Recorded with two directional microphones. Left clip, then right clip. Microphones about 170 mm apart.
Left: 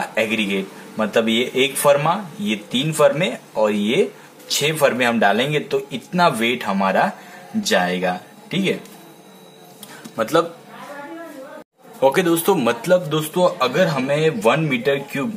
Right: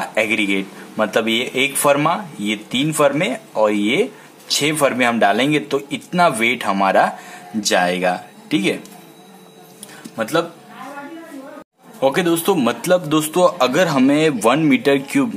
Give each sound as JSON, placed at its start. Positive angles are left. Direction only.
{"t": 0.0, "sound": "speech", "side_deg": -25}
{"t": 10.1, "sound": "speech", "side_deg": 5}
{"t": 12.0, "sound": "speech", "side_deg": -5}
{"t": 13.1, "sound": "a man's voice", "side_deg": -35}